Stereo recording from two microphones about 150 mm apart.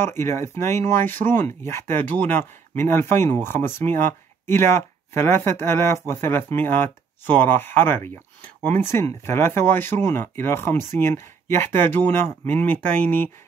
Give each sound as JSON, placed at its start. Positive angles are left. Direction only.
{"t": 0.0, "sound": "speech", "side_deg": 15}